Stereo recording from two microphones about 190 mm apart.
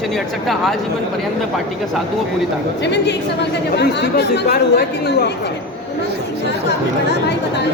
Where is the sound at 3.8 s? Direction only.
60° left (ahead or behind).